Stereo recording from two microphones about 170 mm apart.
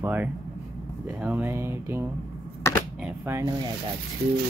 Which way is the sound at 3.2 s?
20° right (ahead or behind).